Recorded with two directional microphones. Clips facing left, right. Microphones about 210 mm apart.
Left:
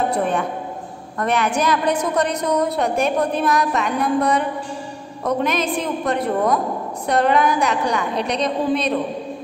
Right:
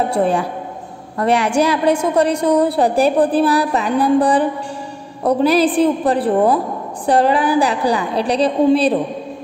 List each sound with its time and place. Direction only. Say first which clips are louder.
0.1 s a woman's voice: right 4 dB; 30° right (ahead or behind)